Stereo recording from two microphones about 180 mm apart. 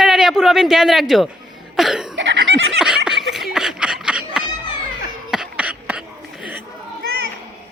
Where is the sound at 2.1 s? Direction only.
90° right.